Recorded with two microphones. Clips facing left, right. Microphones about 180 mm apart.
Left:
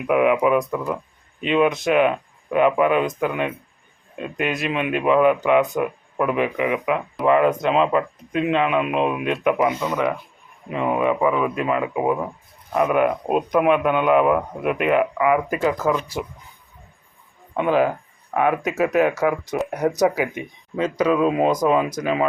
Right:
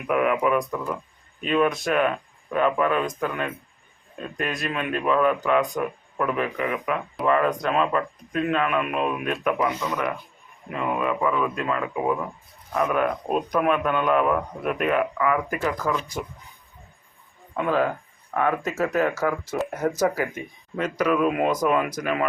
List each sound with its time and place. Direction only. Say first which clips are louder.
0.1 s a man's voice: left 4 dB; 10° left (ahead or behind)
17.6 s a man's voice: left 4 dB; 20° left (ahead or behind)